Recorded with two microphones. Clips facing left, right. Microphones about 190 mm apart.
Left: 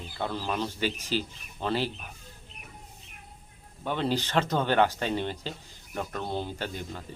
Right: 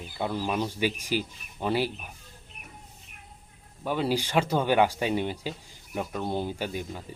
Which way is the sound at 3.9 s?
10° right (ahead or behind).